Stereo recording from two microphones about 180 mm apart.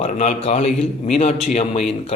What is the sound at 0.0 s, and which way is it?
Speech, 40° left (ahead or behind).